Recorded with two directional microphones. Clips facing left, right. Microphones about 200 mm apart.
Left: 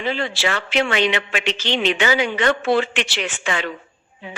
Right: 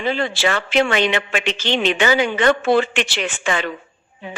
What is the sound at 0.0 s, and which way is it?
A man's voice, 50° right (ahead or behind).